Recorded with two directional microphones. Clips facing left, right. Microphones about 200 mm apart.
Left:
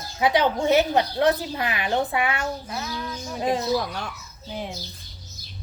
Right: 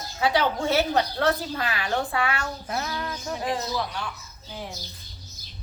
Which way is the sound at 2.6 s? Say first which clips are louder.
Right 2 dB; 55° right (ahead or behind).